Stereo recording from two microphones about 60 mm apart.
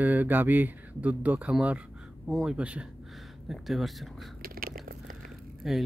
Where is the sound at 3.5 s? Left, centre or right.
Centre.